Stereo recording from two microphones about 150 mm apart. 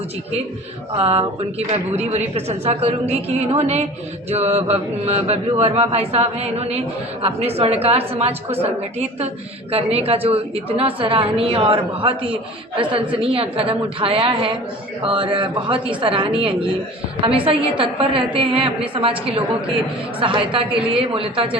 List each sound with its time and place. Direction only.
0.9 s mantra: 40° right (ahead or behind)
9.7 s a woman's voice: 40° right (ahead or behind)